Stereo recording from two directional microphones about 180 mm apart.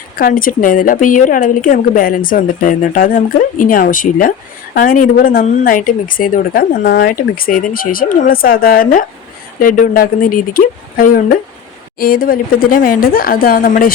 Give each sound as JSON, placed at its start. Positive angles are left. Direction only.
{"t": 0.2, "sound": "a woman's voice", "side_deg": 50}